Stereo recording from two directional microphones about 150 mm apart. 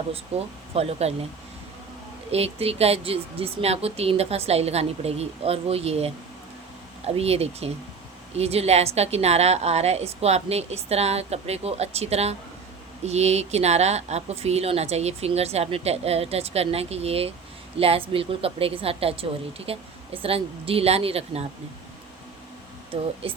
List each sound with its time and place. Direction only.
0.1 s a woman's voice: 40° right (ahead or behind)
2.3 s a woman's voice: 45° right (ahead or behind)
7.2 s a woman's voice: 45° right (ahead or behind)
23.2 s a woman's voice: 40° right (ahead or behind)